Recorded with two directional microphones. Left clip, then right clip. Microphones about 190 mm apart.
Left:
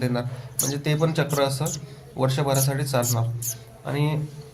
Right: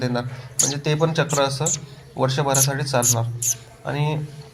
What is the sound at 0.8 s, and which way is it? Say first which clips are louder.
A man's voice: right 2 dB; 5° right (ahead or behind).